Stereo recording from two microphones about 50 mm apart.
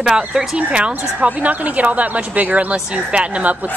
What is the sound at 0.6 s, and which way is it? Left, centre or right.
A woman's voice, right.